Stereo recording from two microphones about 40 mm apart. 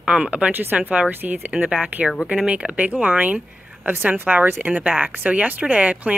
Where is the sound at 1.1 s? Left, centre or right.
Right.